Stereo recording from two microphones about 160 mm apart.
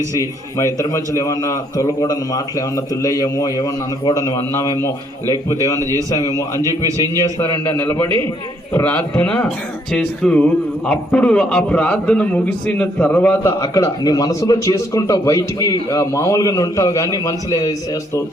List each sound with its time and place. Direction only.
0.0 s speech: 20° right (ahead or behind)
0.5 s a man's voice: 20° left (ahead or behind)
5.8 s speech: 20° right (ahead or behind)
6.1 s a man's voice: 20° left (ahead or behind)
6.6 s speech: 20° right (ahead or behind)
7.2 s a man's voice: 20° left (ahead or behind)